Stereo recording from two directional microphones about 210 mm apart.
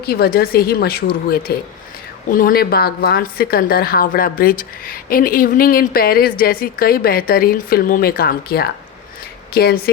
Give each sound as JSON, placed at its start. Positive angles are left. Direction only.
{"t": 0.0, "sound": "speech", "side_deg": 45}